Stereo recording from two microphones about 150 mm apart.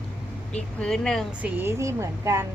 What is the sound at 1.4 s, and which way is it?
A woman's voice, 15° right (ahead or behind).